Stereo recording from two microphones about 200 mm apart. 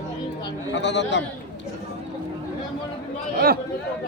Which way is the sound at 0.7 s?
60° left (ahead or behind).